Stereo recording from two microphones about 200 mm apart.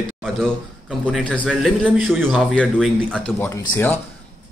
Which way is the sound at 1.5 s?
5° right (ahead or behind).